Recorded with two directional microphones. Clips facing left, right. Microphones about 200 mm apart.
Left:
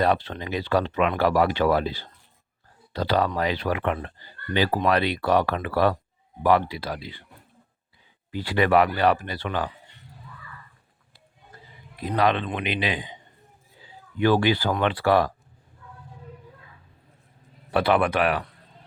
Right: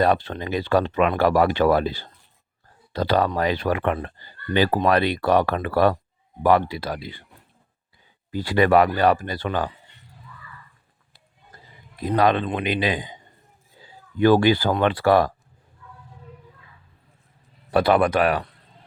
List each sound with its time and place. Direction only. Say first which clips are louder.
0.0 s speech: right 3 dB; 45° right (ahead or behind)
8.3 s speech: right 3 dB; 40° right (ahead or behind)
12.1 s speech: right 3 dB; 45° right (ahead or behind)
17.7 s a man's voice: right 3 dB; 40° right (ahead or behind)